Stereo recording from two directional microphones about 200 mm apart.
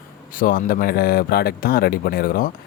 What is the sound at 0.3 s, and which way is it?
Speech, 45° left (ahead or behind).